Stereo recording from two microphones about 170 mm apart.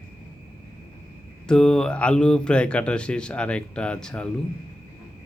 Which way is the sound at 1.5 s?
5° left (ahead or behind).